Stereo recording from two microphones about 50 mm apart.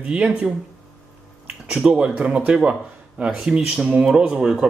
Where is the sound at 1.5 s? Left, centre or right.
Centre.